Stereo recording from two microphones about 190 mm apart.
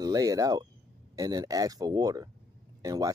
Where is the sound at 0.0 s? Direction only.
20° right (ahead or behind).